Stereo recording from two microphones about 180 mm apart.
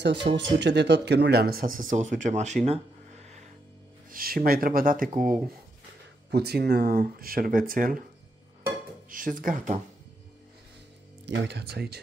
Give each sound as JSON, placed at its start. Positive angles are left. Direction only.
{"t": 0.0, "sound": "speech", "side_deg": -75}
{"t": 4.1, "sound": "speech", "side_deg": -55}
{"t": 6.3, "sound": "speech", "side_deg": -65}
{"t": 9.1, "sound": "speech", "side_deg": -50}
{"t": 11.2, "sound": "speech", "side_deg": -65}